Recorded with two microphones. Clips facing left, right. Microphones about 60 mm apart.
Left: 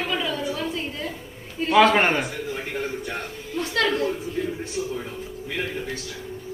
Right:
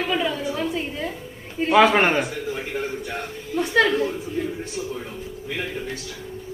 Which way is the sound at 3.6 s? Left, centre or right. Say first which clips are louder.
Right 4 dB; centre.